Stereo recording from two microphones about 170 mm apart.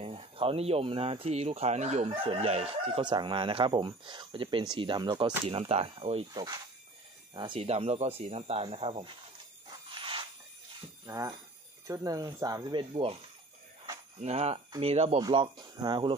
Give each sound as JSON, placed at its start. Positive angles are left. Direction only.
{"t": 0.0, "sound": "speech", "side_deg": -35}
{"t": 3.0, "sound": "speech", "side_deg": -25}
{"t": 9.7, "sound": "a sound", "side_deg": -30}
{"t": 11.1, "sound": "speech", "side_deg": -20}
{"t": 14.2, "sound": "speech", "side_deg": -35}